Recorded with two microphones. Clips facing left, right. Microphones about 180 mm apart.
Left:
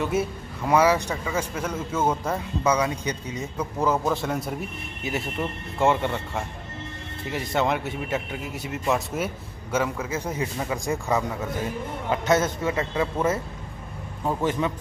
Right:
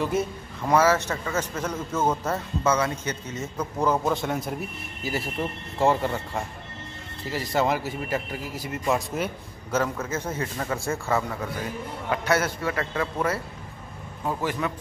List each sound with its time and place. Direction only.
0.0 s a man's voice: 5° left (ahead or behind); by 14.7 s 25° left (ahead or behind)